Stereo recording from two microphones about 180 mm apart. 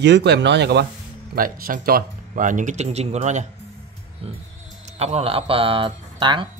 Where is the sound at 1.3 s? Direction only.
55° right (ahead or behind).